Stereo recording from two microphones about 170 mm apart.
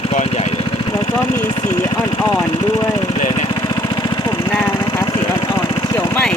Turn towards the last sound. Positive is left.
turn(degrees=10)  # may be behind; listen again after turning